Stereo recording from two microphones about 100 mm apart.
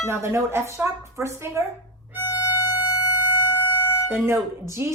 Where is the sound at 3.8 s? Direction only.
25° left (ahead or behind).